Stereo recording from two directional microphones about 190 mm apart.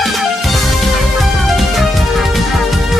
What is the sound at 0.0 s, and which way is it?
Music, centre (ahead or behind).